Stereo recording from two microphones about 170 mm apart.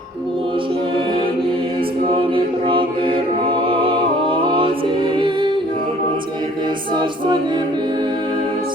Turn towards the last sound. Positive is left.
turn(degrees=-25)  # may be behind; listen again after turning